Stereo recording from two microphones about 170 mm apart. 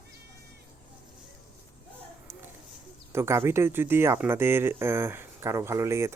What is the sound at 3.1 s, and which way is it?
Speech, 15° right (ahead or behind).